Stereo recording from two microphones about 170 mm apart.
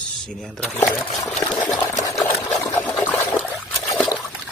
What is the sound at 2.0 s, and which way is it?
Water, 20° left (ahead or behind).